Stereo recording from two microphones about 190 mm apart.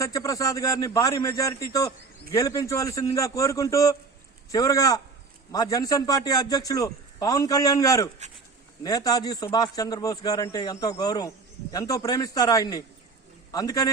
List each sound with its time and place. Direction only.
0.0 s a man's voice: 15° left (ahead or behind)